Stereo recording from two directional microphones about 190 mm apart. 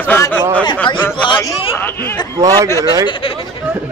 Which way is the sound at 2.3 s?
20° right (ahead or behind).